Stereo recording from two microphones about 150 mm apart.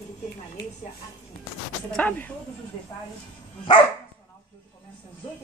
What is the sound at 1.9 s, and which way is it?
Speech, 10° left (ahead or behind).